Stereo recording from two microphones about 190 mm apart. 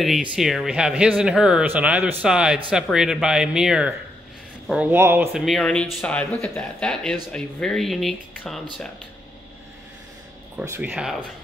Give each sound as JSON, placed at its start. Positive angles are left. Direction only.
{"t": 0.0, "sound": "speech", "side_deg": 0}
{"t": 10.6, "sound": "speech", "side_deg": -10}